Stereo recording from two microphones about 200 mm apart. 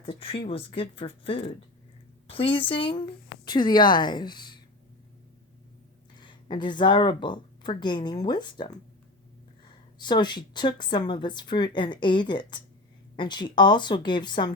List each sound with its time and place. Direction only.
0.0 s a woman's voice: 25° left (ahead or behind)
6.1 s a woman's voice: 20° left (ahead or behind)
10.0 s a woman's voice: 20° left (ahead or behind)